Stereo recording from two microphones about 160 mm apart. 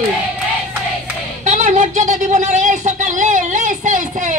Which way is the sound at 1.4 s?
50° right (ahead or behind).